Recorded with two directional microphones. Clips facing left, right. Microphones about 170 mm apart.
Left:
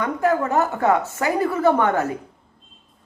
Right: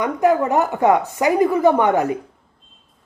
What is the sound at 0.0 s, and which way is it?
Speech, 15° right (ahead or behind).